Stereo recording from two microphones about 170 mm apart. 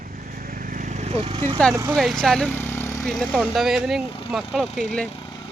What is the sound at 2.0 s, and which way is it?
Speech, centre (ahead or behind).